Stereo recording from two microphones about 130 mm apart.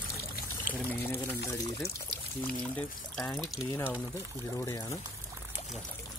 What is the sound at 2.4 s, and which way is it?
Speech, 10° left (ahead or behind).